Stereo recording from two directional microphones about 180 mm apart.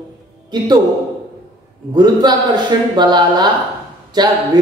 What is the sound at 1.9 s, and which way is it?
A man's voice, 25° right (ahead or behind).